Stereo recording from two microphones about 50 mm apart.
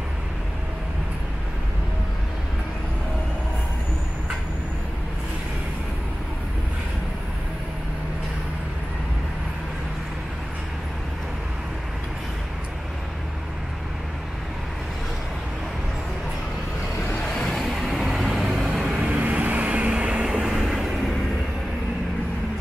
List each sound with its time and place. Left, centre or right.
17.3 s vehicle: centre
19.0 s vehicle: right; by 20.8 s centre